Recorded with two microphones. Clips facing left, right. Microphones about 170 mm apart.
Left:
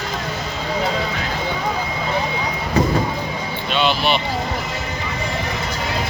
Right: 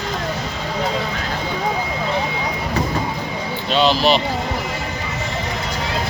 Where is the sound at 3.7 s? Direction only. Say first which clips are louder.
Right 3 dB; 35° right (ahead or behind).